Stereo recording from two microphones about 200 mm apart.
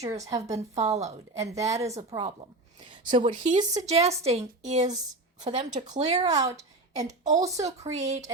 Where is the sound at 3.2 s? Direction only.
40° right (ahead or behind).